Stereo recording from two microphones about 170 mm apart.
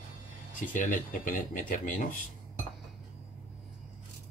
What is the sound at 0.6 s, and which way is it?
Speech, 50° left (ahead or behind).